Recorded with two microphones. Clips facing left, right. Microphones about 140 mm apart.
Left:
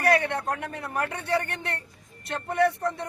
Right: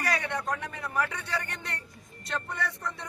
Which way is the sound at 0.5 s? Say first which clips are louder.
Left 1 dB; 65° left (ahead or behind).